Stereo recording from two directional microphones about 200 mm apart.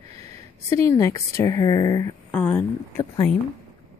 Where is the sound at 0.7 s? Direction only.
15° left (ahead or behind).